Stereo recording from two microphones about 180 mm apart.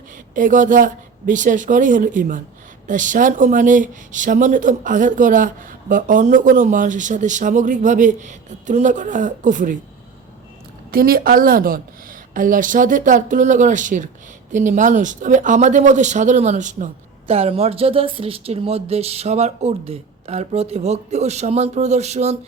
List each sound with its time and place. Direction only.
0.3 s speech: 45° right (ahead or behind)
10.9 s speech: 55° right (ahead or behind); by 22.4 s 40° right (ahead or behind)